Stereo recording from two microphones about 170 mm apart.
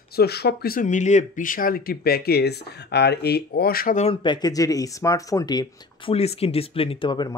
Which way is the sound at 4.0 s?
30° left (ahead or behind).